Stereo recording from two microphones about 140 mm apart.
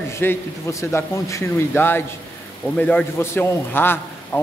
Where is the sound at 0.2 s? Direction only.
20° left (ahead or behind).